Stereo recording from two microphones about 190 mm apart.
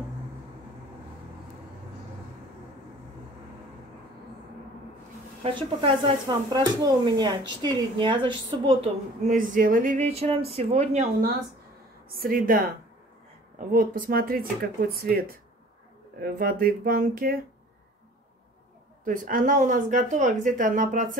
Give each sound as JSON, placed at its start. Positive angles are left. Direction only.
{"t": 5.4, "sound": "speech", "side_deg": -30}
{"t": 9.3, "sound": "speech", "side_deg": -45}
{"t": 12.1, "sound": "speech", "side_deg": -50}
{"t": 19.0, "sound": "speech", "side_deg": -45}